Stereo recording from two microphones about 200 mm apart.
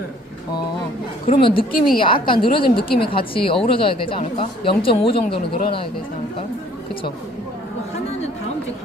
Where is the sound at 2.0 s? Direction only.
25° left (ahead or behind).